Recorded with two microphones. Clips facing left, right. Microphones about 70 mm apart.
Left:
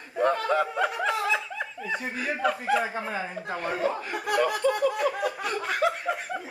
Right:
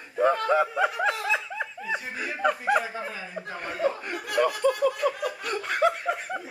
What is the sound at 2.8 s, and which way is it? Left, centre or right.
Speech, left.